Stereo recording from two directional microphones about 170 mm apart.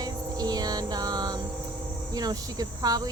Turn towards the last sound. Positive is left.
turn(degrees=-20)  # may be behind; listen again after turning